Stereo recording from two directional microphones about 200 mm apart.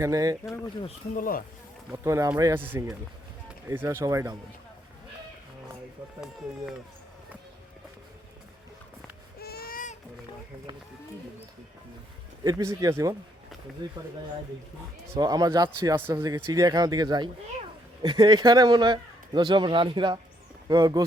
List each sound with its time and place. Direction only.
0.0 s speech: 15° right (ahead or behind)
1.1 s speech: 45° left (ahead or behind)
1.9 s speech: 15° right (ahead or behind)
6.1 s speech: centre (ahead or behind)
9.4 s a sound: 50° left (ahead or behind)
12.4 s speech: 20° right (ahead or behind)
15.1 s speech: 20° right (ahead or behind)